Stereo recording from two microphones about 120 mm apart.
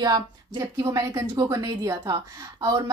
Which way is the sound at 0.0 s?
30° right (ahead or behind).